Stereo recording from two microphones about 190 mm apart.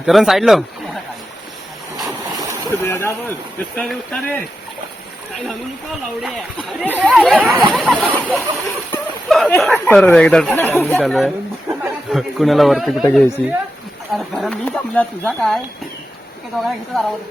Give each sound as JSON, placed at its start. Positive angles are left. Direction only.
{"t": 0.0, "sound": "speech", "side_deg": 0}
{"t": 2.0, "sound": "a sound", "side_deg": -15}
{"t": 2.8, "sound": "speech", "side_deg": 15}
{"t": 5.5, "sound": "speech", "side_deg": 0}
{"t": 8.9, "sound": "a sound", "side_deg": 5}
{"t": 9.7, "sound": "speech", "side_deg": 10}
{"t": 16.6, "sound": "speech", "side_deg": 0}